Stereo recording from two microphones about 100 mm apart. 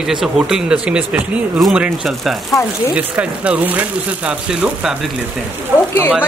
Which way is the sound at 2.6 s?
30° left (ahead or behind).